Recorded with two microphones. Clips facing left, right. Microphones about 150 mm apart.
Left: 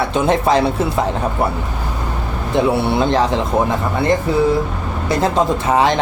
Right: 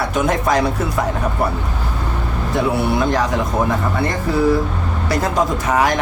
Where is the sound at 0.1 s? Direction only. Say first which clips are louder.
Left 3 dB; 25° left (ahead or behind).